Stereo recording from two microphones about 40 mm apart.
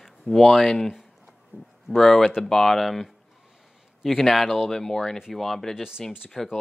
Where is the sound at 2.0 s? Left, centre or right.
Centre.